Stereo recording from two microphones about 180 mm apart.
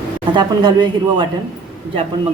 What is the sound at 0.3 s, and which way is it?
Speech, 25° right (ahead or behind).